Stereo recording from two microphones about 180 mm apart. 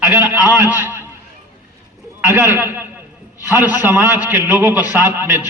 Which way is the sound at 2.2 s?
10° right (ahead or behind).